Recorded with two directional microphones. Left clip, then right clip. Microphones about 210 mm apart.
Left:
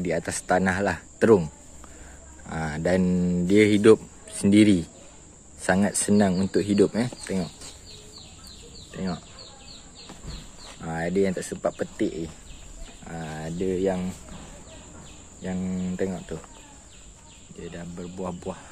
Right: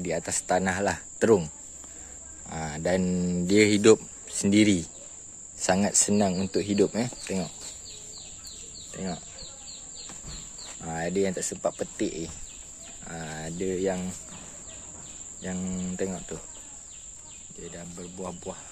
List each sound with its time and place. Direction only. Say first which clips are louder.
0.0 s speech: left 2 dB; 5° right (ahead or behind)
2.5 s speech: left 3 dB; 5° right (ahead or behind)
8.9 s speech: left 2 dB; 10° right (ahead or behind)
10.7 s speech: left 2 dB; 15° right (ahead or behind)
15.4 s speech: left 3 dB; 15° right (ahead or behind)
17.6 s speech: left 4 dB; centre (ahead or behind)